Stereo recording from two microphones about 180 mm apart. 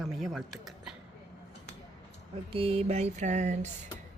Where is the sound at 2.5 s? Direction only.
30° right (ahead or behind).